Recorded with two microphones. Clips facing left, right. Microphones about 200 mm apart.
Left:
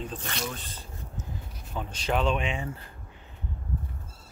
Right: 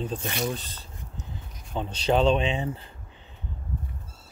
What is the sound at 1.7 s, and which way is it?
Speech, 30° right (ahead or behind).